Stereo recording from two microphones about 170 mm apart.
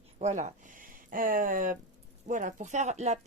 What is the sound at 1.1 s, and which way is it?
Speech, 55° right (ahead or behind).